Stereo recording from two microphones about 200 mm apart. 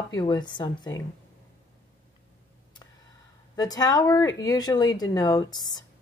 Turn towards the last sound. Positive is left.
turn(degrees=20)  # may be behind; listen again after turning